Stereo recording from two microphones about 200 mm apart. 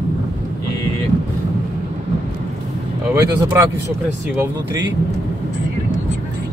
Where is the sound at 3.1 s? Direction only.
15° right (ahead or behind).